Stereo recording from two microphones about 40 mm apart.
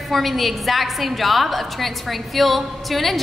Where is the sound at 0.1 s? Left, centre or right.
Centre.